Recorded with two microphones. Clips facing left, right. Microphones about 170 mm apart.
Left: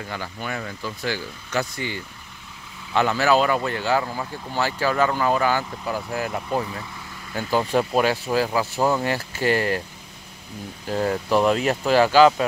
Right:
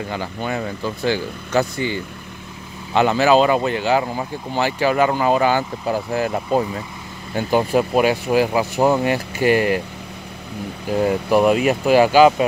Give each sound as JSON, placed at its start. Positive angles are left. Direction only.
{"t": 0.1, "sound": "speech", "side_deg": -25}
{"t": 10.9, "sound": "speech", "side_deg": -10}